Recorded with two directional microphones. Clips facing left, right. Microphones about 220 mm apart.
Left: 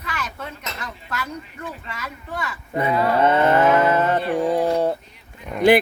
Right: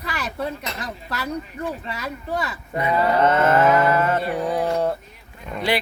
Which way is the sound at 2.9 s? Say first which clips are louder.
Even; 10° left (ahead or behind).